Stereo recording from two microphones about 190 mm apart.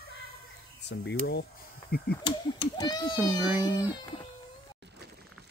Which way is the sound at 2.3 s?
25° left (ahead or behind).